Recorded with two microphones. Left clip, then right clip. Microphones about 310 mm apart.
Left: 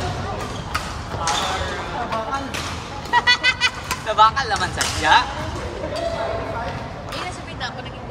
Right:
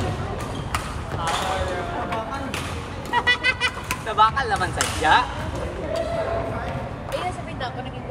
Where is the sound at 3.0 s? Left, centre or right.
Centre.